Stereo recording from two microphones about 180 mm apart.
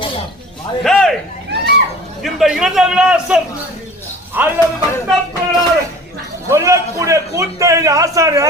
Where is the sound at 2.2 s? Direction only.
Centre (ahead or behind).